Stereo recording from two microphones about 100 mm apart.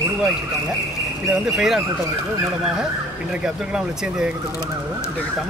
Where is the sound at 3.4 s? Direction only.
5° right (ahead or behind).